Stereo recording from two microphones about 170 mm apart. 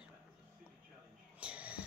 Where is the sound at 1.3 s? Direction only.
5° right (ahead or behind).